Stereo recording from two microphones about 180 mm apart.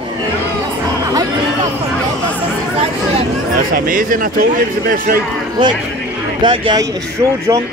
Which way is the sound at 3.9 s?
50° right (ahead or behind).